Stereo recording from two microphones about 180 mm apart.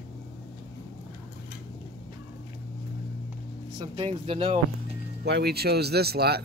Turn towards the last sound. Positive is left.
turn(degrees=-60)  # may be behind; listen again after turning